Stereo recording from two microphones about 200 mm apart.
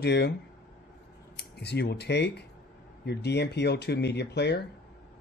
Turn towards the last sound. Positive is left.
turn(degrees=55)  # may be behind; listen again after turning